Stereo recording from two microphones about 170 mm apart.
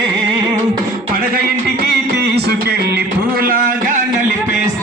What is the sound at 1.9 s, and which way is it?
Music, 75° right (ahead or behind).